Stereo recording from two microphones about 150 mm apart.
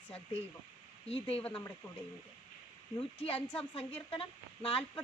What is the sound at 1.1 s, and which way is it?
Speech, 40° left (ahead or behind).